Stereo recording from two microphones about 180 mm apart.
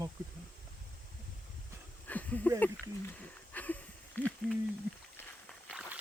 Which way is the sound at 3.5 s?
10° left (ahead or behind).